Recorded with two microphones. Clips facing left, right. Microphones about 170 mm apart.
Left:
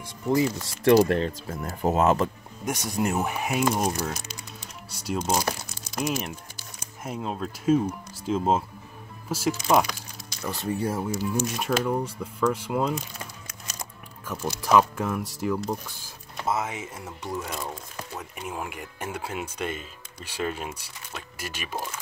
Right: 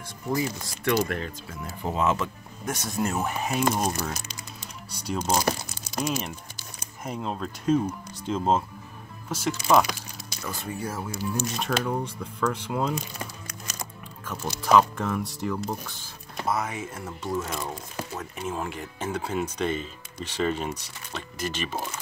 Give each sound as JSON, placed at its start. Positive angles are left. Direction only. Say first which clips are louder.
{"t": 0.8, "sound": "speech", "louder": "left 7 dB", "side_deg": 30}
{"t": 1.5, "sound": "speech", "louder": "left 5 dB", "side_deg": 45}
{"t": 2.6, "sound": "speech", "louder": "left 2 dB", "side_deg": 15}
{"t": 5.3, "sound": "crumpling", "louder": "right 4 dB", "side_deg": 0}
{"t": 7.1, "sound": "speech", "louder": "even", "side_deg": 5}
{"t": 10.4, "sound": "speech", "louder": "left 5 dB", "side_deg": 30}
{"t": 11.3, "sound": "speech", "louder": "left 1 dB", "side_deg": 10}
{"t": 14.2, "sound": "speech", "louder": "left 1 dB", "side_deg": 10}
{"t": 16.4, "sound": "speech", "louder": "even", "side_deg": 25}
{"t": 21.7, "sound": "speech", "louder": "right 1 dB", "side_deg": -5}